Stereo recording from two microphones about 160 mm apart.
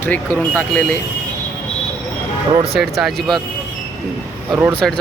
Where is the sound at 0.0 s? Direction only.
10° left (ahead or behind).